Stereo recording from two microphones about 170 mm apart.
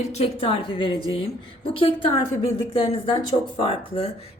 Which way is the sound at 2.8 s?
30° left (ahead or behind).